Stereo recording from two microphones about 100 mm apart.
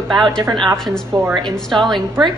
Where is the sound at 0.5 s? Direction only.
55° right (ahead or behind).